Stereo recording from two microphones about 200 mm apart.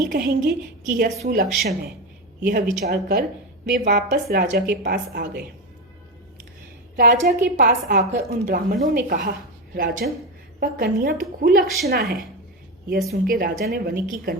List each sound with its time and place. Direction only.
0.0 s speech: 45° right (ahead or behind)
1.1 s a woman's voice: 40° right (ahead or behind)
2.8 s speech: 50° right (ahead or behind)
6.9 s a woman's voice: 45° right (ahead or behind)
11.6 s a woman's voice: centre (ahead or behind)
11.9 s speech: 50° right (ahead or behind)